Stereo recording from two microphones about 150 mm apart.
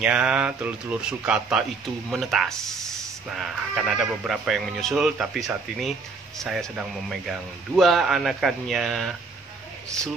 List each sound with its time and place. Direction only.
0.0 s speech: 5° right (ahead or behind)